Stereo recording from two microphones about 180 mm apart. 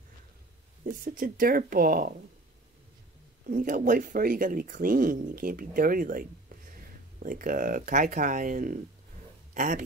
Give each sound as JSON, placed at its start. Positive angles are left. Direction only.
{"t": 0.8, "sound": "speech", "side_deg": -50}
{"t": 3.4, "sound": "speech", "side_deg": -50}